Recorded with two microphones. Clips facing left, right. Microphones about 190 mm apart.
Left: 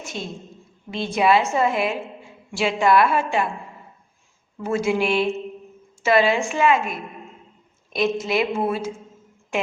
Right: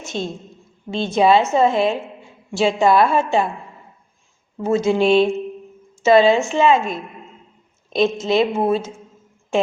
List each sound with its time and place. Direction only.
0.1 s a woman's voice: 30° right (ahead or behind)
4.5 s a woman's voice: 25° right (ahead or behind)